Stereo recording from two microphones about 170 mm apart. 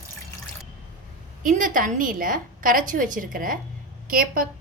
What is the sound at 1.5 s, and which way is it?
A woman's voice, 50° right (ahead or behind).